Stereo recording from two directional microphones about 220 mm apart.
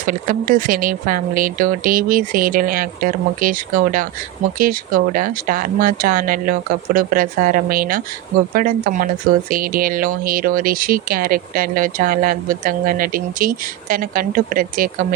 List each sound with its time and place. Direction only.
0.0 s speech: 35° right (ahead or behind)